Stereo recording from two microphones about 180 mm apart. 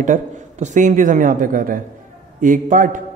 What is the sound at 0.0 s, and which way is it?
Speech, 45° right (ahead or behind).